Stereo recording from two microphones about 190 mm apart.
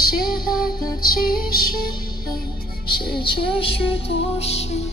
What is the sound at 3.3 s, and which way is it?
Music, 30° left (ahead or behind).